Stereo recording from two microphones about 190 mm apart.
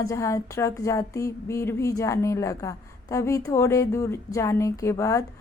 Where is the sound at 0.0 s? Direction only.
15° left (ahead or behind).